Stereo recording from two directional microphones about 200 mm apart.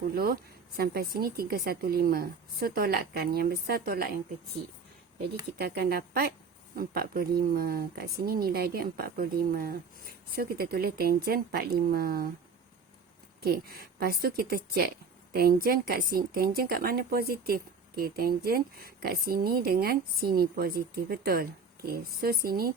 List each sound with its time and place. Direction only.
0.1 s a woman's voice: 50° right (ahead or behind)
5.5 s a woman's voice: 50° right (ahead or behind)
13.4 s a woman's voice: 50° right (ahead or behind)